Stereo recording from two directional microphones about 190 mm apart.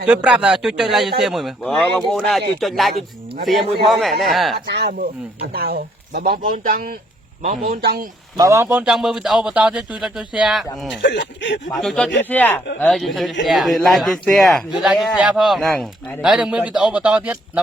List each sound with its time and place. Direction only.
0.0 s speech: 5° right (ahead or behind)
4.2 s speech: centre (ahead or behind)
4.7 s speech: 50° right (ahead or behind)
8.4 s speech: 15° right (ahead or behind)
11.0 s speech: 65° left (ahead or behind)
11.8 s speech: centre (ahead or behind)
16.2 s speech: 5° right (ahead or behind)